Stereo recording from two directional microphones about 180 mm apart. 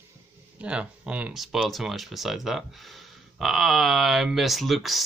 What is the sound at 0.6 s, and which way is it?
Speech, 5° right (ahead or behind).